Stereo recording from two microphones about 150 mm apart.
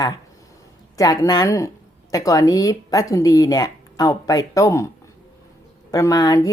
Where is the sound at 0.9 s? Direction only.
25° left (ahead or behind).